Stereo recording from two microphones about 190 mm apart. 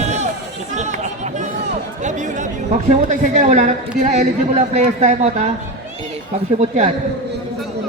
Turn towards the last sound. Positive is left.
turn(degrees=-35)  # may be behind; listen again after turning